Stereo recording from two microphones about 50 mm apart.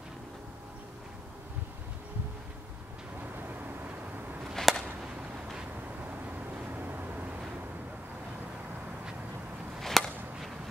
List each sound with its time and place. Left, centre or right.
3.3 s vehicle: right
4.6 s a sound: centre
6.8 s vehicle: right
9.8 s chop: centre